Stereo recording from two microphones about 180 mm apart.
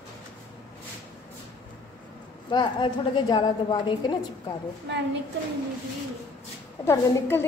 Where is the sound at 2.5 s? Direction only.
25° left (ahead or behind).